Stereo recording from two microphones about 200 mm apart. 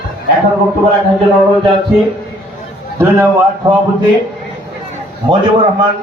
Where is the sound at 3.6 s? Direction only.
20° right (ahead or behind).